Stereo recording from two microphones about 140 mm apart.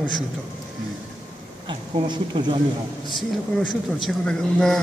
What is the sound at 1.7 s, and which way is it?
Speech, 35° right (ahead or behind).